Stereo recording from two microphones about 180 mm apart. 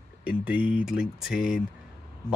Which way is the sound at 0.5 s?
5° right (ahead or behind).